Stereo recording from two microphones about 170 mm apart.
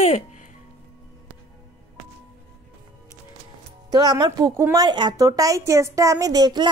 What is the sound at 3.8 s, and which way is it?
Speech, 25° right (ahead or behind).